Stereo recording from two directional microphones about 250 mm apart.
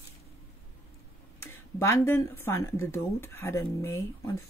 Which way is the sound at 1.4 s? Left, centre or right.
Centre.